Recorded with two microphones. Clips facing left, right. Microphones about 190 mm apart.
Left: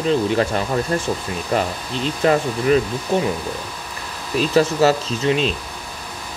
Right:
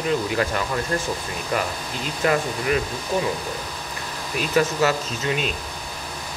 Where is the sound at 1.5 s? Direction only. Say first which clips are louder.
Left 4 dB; 30° left (ahead or behind).